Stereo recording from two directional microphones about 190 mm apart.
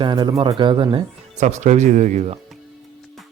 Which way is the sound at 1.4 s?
35° right (ahead or behind).